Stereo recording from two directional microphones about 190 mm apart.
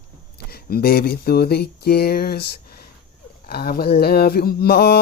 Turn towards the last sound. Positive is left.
turn(degrees=55)  # may be behind; listen again after turning